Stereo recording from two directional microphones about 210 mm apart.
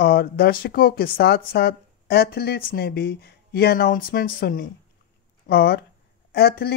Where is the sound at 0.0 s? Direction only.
45° left (ahead or behind).